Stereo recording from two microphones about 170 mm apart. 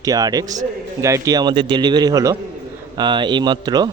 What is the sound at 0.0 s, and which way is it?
A man's voice, 20° right (ahead or behind).